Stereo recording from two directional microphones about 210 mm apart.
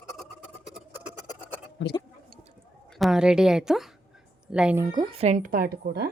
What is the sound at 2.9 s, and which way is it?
Speech, centre (ahead or behind).